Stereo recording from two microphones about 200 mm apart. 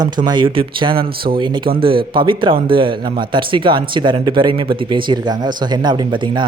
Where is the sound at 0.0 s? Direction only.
20° right (ahead or behind).